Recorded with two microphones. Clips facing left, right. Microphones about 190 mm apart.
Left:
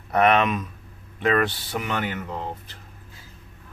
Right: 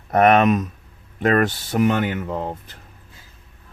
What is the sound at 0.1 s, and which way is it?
Speech, 45° right (ahead or behind).